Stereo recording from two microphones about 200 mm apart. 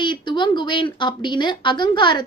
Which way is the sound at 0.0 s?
25° left (ahead or behind).